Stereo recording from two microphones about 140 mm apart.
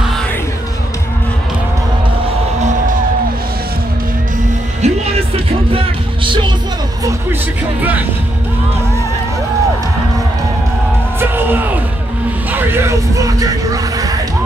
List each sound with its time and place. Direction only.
4.8 s music: 55° right (ahead or behind)
6.2 s music: 35° right (ahead or behind)
11.1 s music: 15° right (ahead or behind)